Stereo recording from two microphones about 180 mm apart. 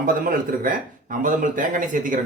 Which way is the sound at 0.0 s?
50° right (ahead or behind).